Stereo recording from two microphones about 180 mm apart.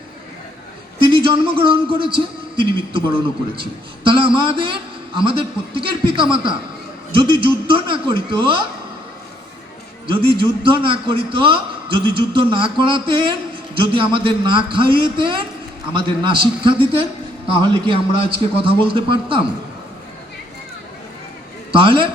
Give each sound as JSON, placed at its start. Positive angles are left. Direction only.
{"t": 1.0, "sound": "a man's voice", "side_deg": -30}
{"t": 10.1, "sound": "a man's voice", "side_deg": -30}
{"t": 21.7, "sound": "a man's voice", "side_deg": -30}